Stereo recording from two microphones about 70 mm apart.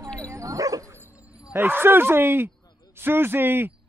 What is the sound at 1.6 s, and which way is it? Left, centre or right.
Speech, right.